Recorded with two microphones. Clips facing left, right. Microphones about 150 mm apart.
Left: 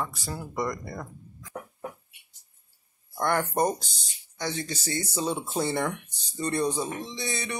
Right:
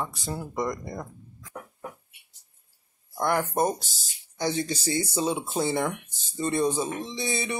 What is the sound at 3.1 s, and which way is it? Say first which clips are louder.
Speech: right 1 dB; 5° right (ahead or behind).